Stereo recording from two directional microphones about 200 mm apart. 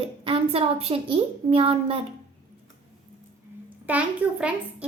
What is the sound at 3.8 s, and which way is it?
A woman's voice, 5° right (ahead or behind).